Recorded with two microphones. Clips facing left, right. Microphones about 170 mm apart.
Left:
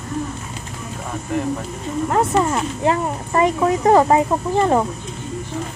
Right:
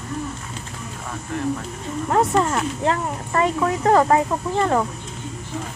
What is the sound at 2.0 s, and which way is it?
Speech, centre (ahead or behind).